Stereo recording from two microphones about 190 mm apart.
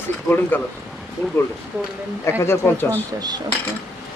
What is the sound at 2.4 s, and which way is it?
Speech, 10° left (ahead or behind).